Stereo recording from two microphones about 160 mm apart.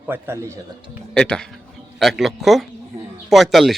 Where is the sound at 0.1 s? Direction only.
15° right (ahead or behind).